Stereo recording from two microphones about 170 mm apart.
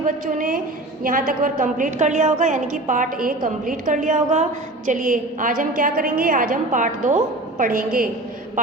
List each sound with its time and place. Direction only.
0.0 s a woman's voice: 50° right (ahead or behind)